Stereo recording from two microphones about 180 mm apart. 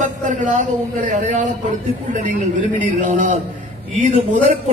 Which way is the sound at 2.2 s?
45° right (ahead or behind).